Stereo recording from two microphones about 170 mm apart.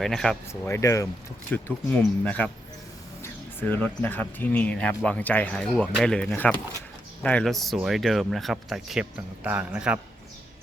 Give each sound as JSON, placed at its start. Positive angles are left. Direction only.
{"t": 0.0, "sound": "speech", "side_deg": 0}
{"t": 0.7, "sound": "speech", "side_deg": 20}
{"t": 3.6, "sound": "speech", "side_deg": 10}